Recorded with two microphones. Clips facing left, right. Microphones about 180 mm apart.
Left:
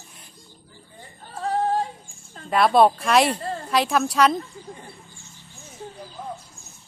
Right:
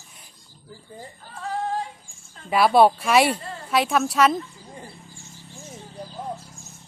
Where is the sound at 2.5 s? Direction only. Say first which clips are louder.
Even; 5° right (ahead or behind).